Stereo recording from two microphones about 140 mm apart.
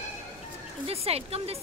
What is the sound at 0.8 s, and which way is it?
Speech, 45° right (ahead or behind).